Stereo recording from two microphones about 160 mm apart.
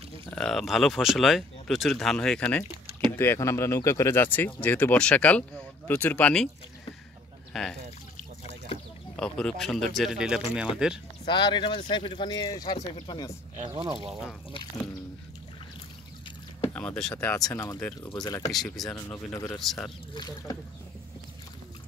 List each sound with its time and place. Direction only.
0.3 s speech: 5° left (ahead or behind)
9.1 s speech: 5° left (ahead or behind)
11.2 s speech: 30° left (ahead or behind)
13.7 s speech: 35° right (ahead or behind)
14.5 s speech: 30° left (ahead or behind)
16.6 s speech: 10° left (ahead or behind)
17.4 s speech: 20° left (ahead or behind)
17.8 s speech: 10° left (ahead or behind)
18.9 s speech: 15° left (ahead or behind)
19.6 s speech: centre (ahead or behind)
20.2 s speech: 25° left (ahead or behind)